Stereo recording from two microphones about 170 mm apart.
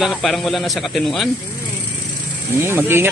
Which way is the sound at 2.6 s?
15° right (ahead or behind).